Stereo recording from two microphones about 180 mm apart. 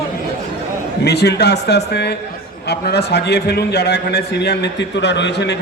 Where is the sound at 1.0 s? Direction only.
65° left (ahead or behind).